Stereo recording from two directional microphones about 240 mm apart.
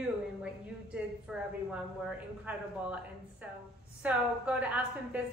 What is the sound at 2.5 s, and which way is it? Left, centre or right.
Speech, centre.